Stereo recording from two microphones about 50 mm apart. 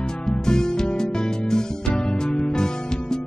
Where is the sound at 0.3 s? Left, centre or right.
Centre.